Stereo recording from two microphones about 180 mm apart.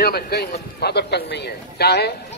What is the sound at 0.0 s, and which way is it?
A man's voice, 60° left (ahead or behind).